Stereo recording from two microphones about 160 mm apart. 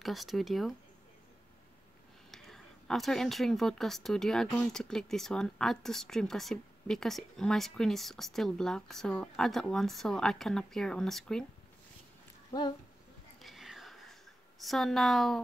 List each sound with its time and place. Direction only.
0.0 s speech: centre (ahead or behind)
2.3 s speech: centre (ahead or behind)
13.4 s whispering: centre (ahead or behind)
14.6 s speech: centre (ahead or behind)